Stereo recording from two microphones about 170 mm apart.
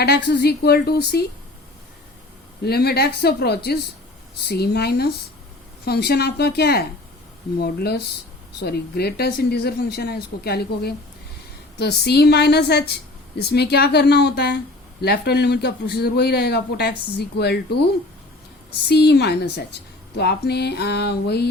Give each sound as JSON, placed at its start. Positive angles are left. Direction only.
{"t": 0.0, "sound": "speech", "side_deg": 70}
{"t": 2.6, "sound": "speech", "side_deg": 70}
{"t": 18.9, "sound": "speech", "side_deg": 80}